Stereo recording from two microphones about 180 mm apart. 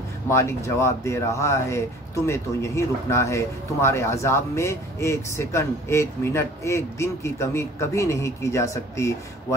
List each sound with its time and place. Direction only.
0.3 s speech: 15° left (ahead or behind)